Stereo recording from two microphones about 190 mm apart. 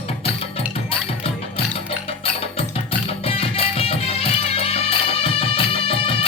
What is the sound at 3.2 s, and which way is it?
Music, 30° left (ahead or behind).